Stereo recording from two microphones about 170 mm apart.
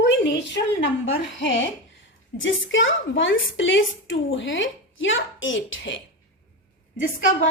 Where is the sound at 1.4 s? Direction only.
90° left.